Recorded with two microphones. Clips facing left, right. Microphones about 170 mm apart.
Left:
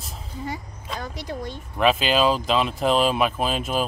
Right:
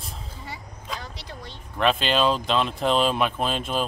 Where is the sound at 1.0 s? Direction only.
45° left (ahead or behind).